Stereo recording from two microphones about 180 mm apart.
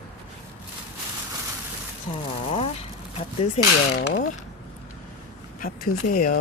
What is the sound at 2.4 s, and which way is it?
Vehicle, 35° left (ahead or behind).